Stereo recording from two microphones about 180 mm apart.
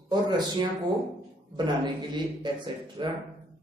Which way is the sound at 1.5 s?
25° right (ahead or behind).